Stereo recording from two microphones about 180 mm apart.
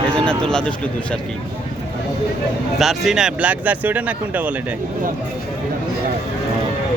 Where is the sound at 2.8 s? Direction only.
Centre (ahead or behind).